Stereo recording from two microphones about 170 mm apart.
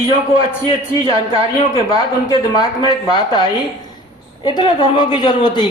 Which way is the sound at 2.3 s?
25° left (ahead or behind).